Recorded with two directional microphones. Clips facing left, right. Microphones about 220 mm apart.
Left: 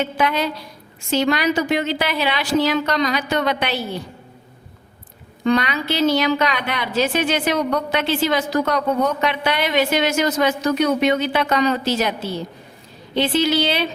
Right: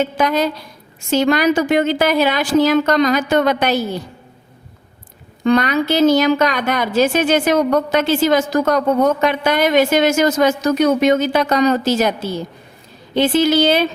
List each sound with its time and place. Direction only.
0.0 s a woman's voice: 40° right (ahead or behind)
5.5 s a woman's voice: 50° right (ahead or behind)